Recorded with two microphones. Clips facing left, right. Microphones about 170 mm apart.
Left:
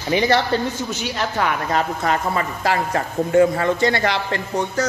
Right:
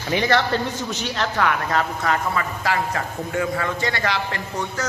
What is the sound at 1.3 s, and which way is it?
Speech, 25° left (ahead or behind).